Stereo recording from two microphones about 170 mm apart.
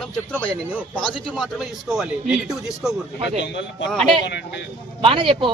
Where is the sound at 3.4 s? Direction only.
90° left.